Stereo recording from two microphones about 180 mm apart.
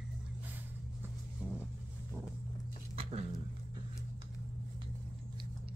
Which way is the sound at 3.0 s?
30° right (ahead or behind).